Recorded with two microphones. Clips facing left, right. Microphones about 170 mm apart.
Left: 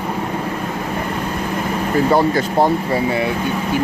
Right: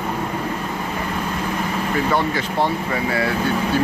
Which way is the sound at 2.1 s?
40° left (ahead or behind).